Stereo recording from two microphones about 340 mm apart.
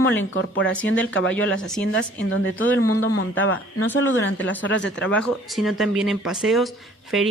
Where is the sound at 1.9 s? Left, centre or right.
Left.